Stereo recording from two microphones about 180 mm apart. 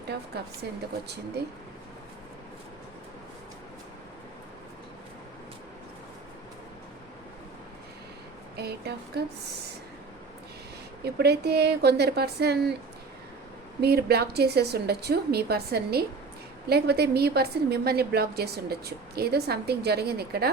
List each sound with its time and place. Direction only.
0.3 s a woman's voice: 65° right (ahead or behind)
8.5 s a woman's voice: 65° right (ahead or behind)
11.0 s a woman's voice: 65° right (ahead or behind)
13.8 s a woman's voice: 60° right (ahead or behind)